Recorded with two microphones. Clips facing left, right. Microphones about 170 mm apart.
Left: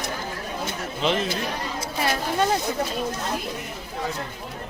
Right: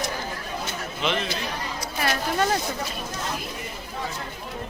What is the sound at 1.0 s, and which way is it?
Speech, 35° left (ahead or behind).